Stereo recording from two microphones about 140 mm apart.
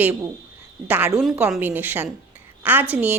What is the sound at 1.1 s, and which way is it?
A woman's voice, 5° right (ahead or behind).